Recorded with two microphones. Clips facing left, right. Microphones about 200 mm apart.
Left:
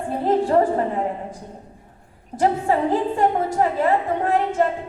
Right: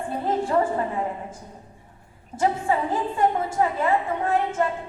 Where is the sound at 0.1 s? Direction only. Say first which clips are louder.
Left 5 dB; 40° left (ahead or behind).